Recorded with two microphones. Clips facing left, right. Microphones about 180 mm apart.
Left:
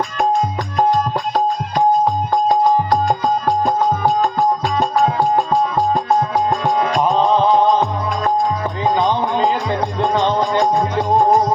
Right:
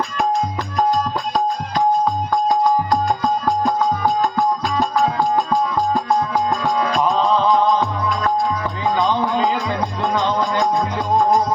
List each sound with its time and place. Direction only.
4.2 s music: 20° left (ahead or behind)